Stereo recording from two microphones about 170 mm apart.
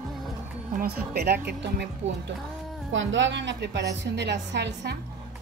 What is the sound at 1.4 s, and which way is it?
Speech, 90° right.